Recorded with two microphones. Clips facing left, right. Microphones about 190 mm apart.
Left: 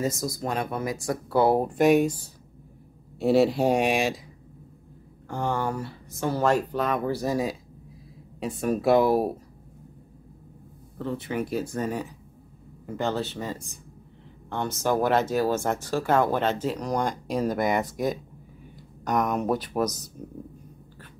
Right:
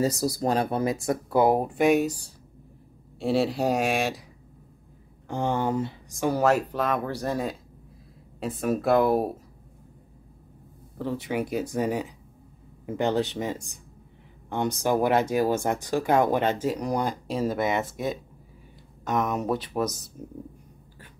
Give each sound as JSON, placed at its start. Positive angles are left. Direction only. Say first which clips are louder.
{"t": 0.0, "sound": "speech", "louder": "right 4 dB", "side_deg": -35}
{"t": 1.7, "sound": "speech", "louder": "left 2 dB", "side_deg": 0}
{"t": 3.2, "sound": "speech", "louder": "left 4 dB", "side_deg": 0}
{"t": 5.3, "sound": "speech", "louder": "right 2 dB", "side_deg": -20}
{"t": 11.0, "sound": "speech", "louder": "right 1 dB", "side_deg": -10}
{"t": 19.0, "sound": "speech", "louder": "left 1 dB", "side_deg": 0}